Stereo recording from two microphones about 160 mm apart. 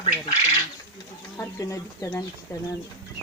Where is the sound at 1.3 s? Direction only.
20° left (ahead or behind).